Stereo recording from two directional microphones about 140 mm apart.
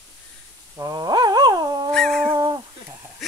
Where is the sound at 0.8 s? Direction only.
30° right (ahead or behind).